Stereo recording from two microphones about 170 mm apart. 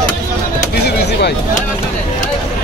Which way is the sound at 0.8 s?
75° left (ahead or behind).